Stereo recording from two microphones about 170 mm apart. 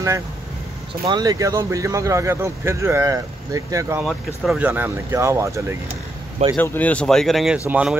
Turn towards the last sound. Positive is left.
turn(degrees=-5)  # may be behind; listen again after turning